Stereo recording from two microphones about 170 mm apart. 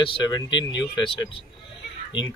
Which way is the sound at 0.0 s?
30° left (ahead or behind).